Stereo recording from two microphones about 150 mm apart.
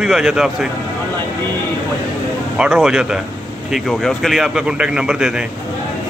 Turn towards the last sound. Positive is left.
turn(degrees=-5)  # may be behind; listen again after turning